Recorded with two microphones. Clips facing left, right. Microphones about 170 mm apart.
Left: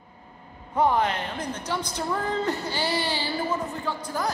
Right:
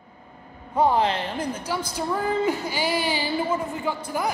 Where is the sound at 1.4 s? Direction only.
10° right (ahead or behind).